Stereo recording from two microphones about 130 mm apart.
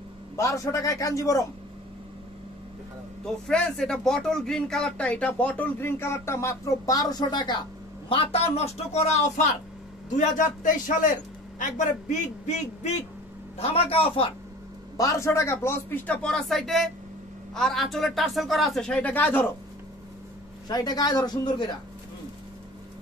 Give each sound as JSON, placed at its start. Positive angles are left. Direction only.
{"t": 0.4, "sound": "a man's voice", "side_deg": 25}
{"t": 3.4, "sound": "speech", "side_deg": 5}
{"t": 8.1, "sound": "speech", "side_deg": 45}
{"t": 10.0, "sound": "a man's voice", "side_deg": 80}
{"t": 11.7, "sound": "a man's voice", "side_deg": 70}
{"t": 13.6, "sound": "speech", "side_deg": 45}
{"t": 15.0, "sound": "speech", "side_deg": 25}
{"t": 20.6, "sound": "speech", "side_deg": 30}